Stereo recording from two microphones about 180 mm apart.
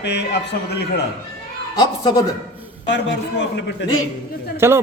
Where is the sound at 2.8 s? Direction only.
75° left (ahead or behind).